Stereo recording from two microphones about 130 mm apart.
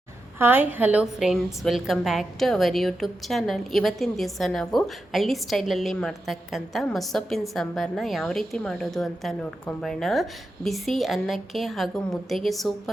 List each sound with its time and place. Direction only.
0.3 s a woman's voice: 15° right (ahead or behind); by 12.9 s centre (ahead or behind)